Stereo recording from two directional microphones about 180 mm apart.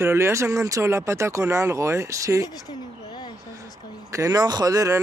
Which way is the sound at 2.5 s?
25° left (ahead or behind).